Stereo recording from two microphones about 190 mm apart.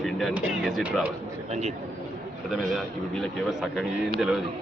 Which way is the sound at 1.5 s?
35° right (ahead or behind).